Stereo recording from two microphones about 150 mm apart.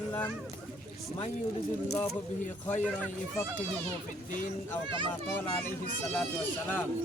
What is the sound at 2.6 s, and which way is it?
Speech, 10° left (ahead or behind).